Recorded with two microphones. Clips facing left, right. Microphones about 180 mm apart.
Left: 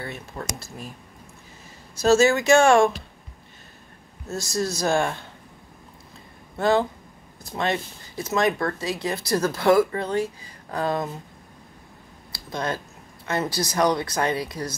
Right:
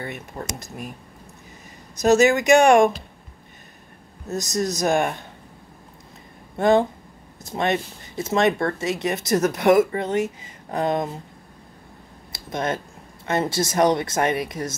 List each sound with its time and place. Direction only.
0.0 s speech: 20° right (ahead or behind)
2.0 s speech: 20° right (ahead or behind)
4.3 s speech: 20° right (ahead or behind)
6.6 s speech: 20° right (ahead or behind)
12.3 s speech: 25° right (ahead or behind)